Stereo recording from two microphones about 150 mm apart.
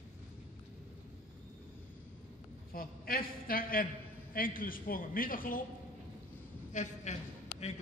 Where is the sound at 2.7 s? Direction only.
75° left (ahead or behind).